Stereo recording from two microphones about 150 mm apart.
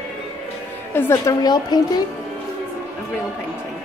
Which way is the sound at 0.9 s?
15° left (ahead or behind).